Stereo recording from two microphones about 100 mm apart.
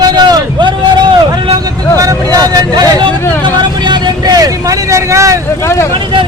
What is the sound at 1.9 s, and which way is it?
Hubbub, 35° right (ahead or behind).